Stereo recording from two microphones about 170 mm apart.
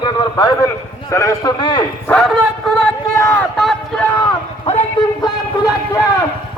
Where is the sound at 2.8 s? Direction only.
15° left (ahead or behind).